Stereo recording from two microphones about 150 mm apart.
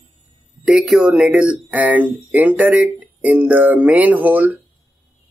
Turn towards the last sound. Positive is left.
turn(degrees=-10)  # may be behind; listen again after turning